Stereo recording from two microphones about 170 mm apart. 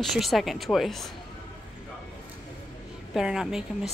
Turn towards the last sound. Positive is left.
turn(degrees=-5)  # may be behind; listen again after turning